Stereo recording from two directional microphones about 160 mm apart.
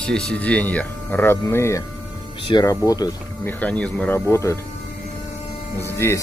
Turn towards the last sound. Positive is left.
turn(degrees=15)  # may be behind; listen again after turning